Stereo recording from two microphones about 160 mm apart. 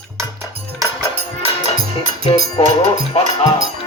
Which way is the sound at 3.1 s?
40° left (ahead or behind).